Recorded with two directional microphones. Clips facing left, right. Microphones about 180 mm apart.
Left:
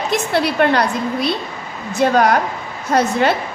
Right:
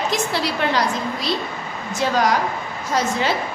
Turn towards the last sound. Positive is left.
turn(degrees=60)  # may be behind; listen again after turning